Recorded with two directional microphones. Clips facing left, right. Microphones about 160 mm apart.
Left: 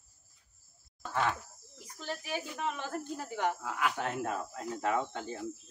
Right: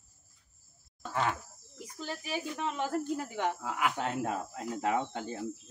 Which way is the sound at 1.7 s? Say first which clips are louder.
Right 1 dB; 15° right (ahead or behind).